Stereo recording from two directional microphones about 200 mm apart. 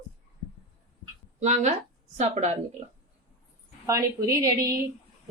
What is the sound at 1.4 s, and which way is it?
Speech, 35° right (ahead or behind).